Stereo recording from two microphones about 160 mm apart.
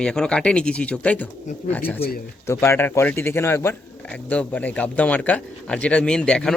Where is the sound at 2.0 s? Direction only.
75° left (ahead or behind).